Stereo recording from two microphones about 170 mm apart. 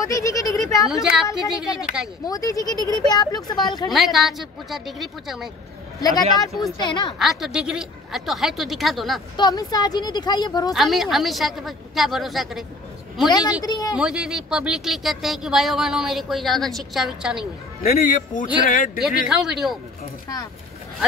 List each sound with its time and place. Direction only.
0.0 s a sound: 20° left (ahead or behind)
1.0 s speech: 5° right (ahead or behind)
2.2 s speech: 20° left (ahead or behind)
3.9 s speech: centre (ahead or behind)
5.9 s speech: 20° left (ahead or behind)
7.2 s speech: centre (ahead or behind)
9.4 s speech: 25° left (ahead or behind)
10.7 s speech: centre (ahead or behind)
13.6 s speech: 20° left (ahead or behind)
13.9 s speech: 5° right (ahead or behind)
17.8 s speech: 50° left (ahead or behind)
19.0 s speech: 5° right (ahead or behind)